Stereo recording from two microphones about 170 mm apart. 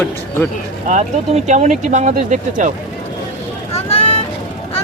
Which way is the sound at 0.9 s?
40° right (ahead or behind).